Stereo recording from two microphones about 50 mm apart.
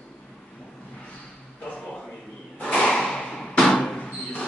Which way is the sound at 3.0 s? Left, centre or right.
Centre.